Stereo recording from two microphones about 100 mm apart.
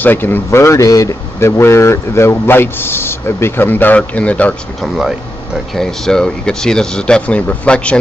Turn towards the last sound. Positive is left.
turn(degrees=10)  # may be behind; listen again after turning